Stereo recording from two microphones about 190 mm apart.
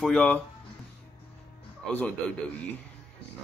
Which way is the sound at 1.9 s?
10° left (ahead or behind).